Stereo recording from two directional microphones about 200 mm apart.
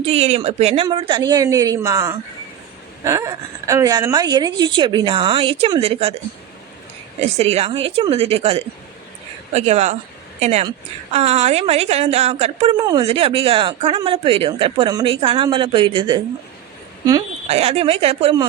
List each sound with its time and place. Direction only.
0.0 s a woman's voice: 30° right (ahead or behind)
7.3 s a woman's voice: 30° right (ahead or behind)
12.8 s a woman's voice: 20° right (ahead or behind)
17.5 s a woman's voice: 30° right (ahead or behind)